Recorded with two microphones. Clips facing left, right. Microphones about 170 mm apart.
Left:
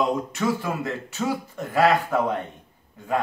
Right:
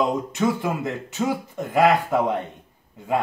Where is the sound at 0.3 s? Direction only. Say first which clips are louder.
Right 2 dB; 20° right (ahead or behind).